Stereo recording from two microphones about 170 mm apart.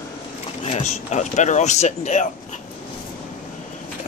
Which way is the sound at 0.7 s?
40° left (ahead or behind).